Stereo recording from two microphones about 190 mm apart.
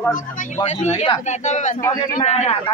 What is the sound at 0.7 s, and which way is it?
A man's voice, 35° left (ahead or behind).